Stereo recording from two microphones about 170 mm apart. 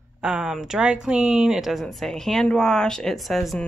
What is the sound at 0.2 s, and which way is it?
Speech, 5° right (ahead or behind).